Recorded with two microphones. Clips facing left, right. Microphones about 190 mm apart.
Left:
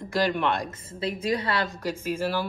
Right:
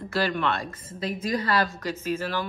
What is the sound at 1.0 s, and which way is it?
Speech, 30° left (ahead or behind).